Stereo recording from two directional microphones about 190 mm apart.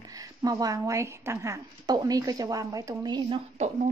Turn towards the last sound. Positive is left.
turn(degrees=-35)  # may be behind; listen again after turning